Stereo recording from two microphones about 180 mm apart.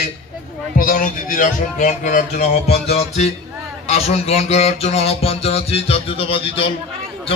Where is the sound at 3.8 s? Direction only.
35° left (ahead or behind).